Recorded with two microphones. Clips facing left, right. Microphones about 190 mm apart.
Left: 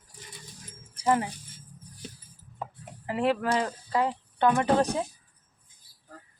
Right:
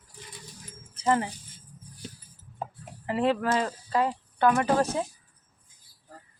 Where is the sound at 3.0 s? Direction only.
15° left (ahead or behind).